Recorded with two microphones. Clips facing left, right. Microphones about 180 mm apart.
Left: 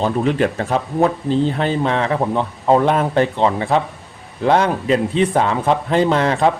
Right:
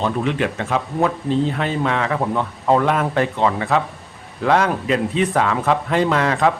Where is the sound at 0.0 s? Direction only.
35° left (ahead or behind).